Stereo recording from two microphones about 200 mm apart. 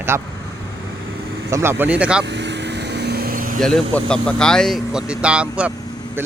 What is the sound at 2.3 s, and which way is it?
Vehicle, 60° right (ahead or behind).